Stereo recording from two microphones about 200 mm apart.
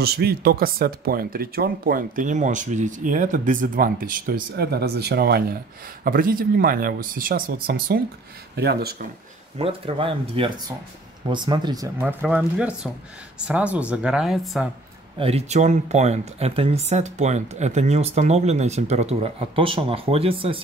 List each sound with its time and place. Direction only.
0.0 s speech: 50° right (ahead or behind)
9.6 s speech: 30° right (ahead or behind); by 14.7 s centre (ahead or behind)
15.1 s speech: 30° right (ahead or behind)